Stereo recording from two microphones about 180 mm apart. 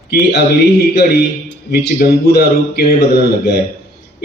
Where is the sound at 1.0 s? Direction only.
60° left (ahead or behind).